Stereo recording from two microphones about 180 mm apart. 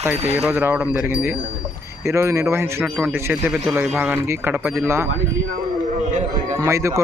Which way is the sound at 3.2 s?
15° right (ahead or behind).